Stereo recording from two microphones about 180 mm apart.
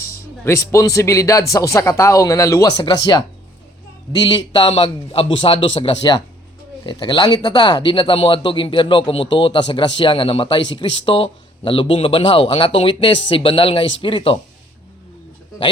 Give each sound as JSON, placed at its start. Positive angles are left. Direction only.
{"t": 0.0, "sound": "speech", "side_deg": 15}
{"t": 4.1, "sound": "speech", "side_deg": 25}